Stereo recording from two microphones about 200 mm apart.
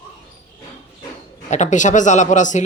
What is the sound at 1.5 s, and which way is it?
Speech, 35° left (ahead or behind).